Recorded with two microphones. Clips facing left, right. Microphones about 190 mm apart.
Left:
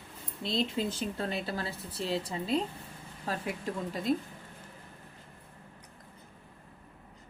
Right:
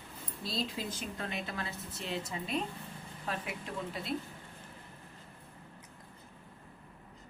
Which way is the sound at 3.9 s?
40° left (ahead or behind).